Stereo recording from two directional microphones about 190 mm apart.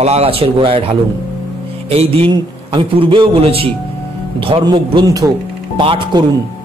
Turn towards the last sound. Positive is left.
turn(degrees=-25)  # may be behind; listen again after turning